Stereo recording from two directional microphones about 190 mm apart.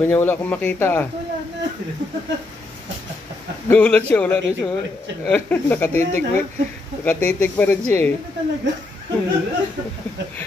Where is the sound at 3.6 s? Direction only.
5° left (ahead or behind).